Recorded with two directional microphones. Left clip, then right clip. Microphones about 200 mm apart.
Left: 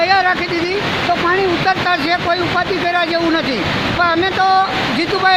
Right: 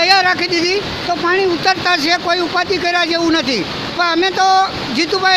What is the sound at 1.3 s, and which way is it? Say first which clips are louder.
Speech: right 4 dB; 50° right (ahead or behind).